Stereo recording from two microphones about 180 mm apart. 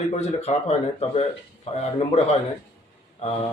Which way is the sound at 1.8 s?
35° left (ahead or behind).